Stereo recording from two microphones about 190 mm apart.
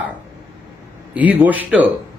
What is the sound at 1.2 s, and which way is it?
Speech, 10° right (ahead or behind).